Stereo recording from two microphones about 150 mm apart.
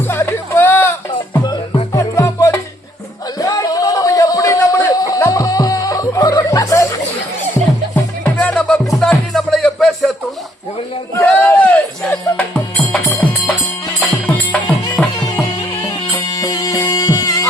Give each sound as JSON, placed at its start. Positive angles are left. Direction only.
{"t": 0.1, "sound": "music", "side_deg": 15}
{"t": 3.3, "sound": "a sound", "side_deg": 25}
{"t": 8.2, "sound": "music", "side_deg": 5}
{"t": 11.3, "sound": "a sound", "side_deg": 10}
{"t": 12.1, "sound": "music", "side_deg": 10}
{"t": 14.3, "sound": "music", "side_deg": 10}
{"t": 15.9, "sound": "music", "side_deg": 20}